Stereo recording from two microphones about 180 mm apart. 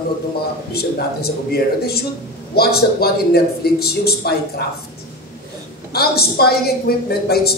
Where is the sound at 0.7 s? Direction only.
60° left (ahead or behind).